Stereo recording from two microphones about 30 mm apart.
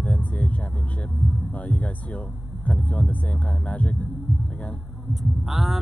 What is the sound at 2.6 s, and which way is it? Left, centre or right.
Speech, left.